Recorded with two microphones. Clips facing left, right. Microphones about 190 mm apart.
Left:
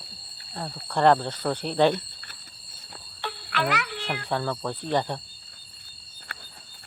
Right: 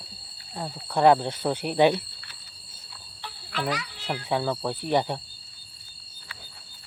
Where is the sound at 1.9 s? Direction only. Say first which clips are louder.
Right 1 dB; 50° left (ahead or behind).